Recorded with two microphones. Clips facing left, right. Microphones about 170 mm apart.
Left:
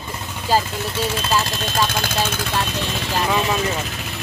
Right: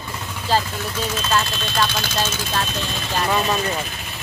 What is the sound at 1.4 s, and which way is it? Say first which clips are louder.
Speech: left 1 dB; 40° left (ahead or behind).